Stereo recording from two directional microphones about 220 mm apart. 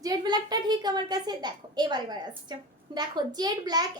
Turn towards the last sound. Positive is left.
turn(degrees=-20)  # may be behind; listen again after turning